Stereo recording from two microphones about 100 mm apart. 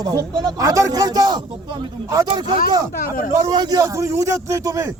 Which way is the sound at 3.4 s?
40° right (ahead or behind).